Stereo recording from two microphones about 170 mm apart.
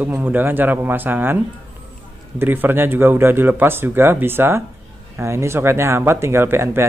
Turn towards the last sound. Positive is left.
turn(degrees=-15)  # may be behind; listen again after turning